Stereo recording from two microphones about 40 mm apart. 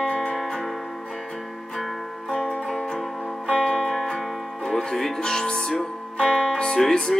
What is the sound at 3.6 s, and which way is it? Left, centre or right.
Music, centre.